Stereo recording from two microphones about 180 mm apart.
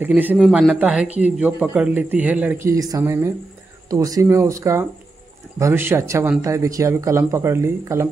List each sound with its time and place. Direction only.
0.0 s a man's voice: 10° right (ahead or behind)